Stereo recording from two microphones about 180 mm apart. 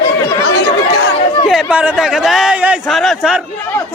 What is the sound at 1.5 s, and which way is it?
A man's voice, 5° right (ahead or behind).